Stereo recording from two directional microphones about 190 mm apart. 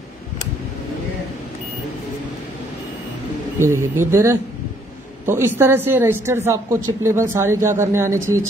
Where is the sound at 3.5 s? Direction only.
15° right (ahead or behind).